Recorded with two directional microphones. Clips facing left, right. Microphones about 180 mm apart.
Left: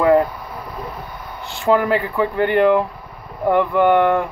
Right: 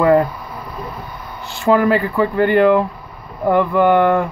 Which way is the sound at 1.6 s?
20° left (ahead or behind).